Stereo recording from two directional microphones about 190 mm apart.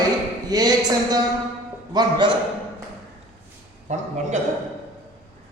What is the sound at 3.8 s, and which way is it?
Speech, 40° right (ahead or behind).